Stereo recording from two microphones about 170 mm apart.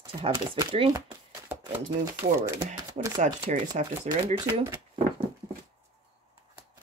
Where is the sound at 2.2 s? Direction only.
30° right (ahead or behind).